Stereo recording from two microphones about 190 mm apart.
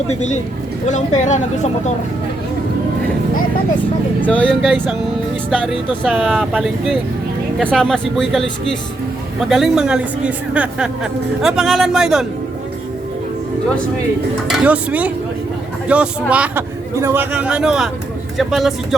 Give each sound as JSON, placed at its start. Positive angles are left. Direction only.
{"t": 0.1, "sound": "speech", "side_deg": 40}
{"t": 4.2, "sound": "a woman's voice", "side_deg": 5}
{"t": 14.5, "sound": "a woman's voice", "side_deg": -5}